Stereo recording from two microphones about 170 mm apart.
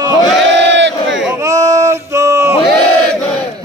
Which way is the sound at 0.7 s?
90° right.